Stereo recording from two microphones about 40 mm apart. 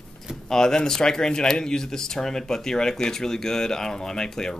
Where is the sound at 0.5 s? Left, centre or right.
Centre.